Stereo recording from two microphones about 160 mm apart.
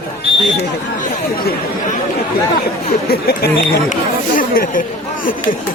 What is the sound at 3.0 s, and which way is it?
Speech, 75° left (ahead or behind).